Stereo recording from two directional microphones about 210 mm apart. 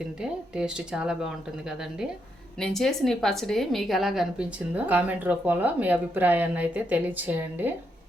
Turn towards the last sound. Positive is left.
turn(degrees=-10)  # may be behind; listen again after turning